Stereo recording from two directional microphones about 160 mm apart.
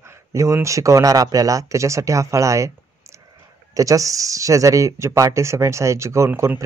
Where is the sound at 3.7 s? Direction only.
20° right (ahead or behind).